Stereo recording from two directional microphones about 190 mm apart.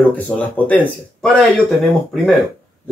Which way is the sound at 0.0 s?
5° left (ahead or behind).